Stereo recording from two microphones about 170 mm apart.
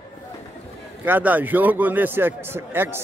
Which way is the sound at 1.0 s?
10° right (ahead or behind).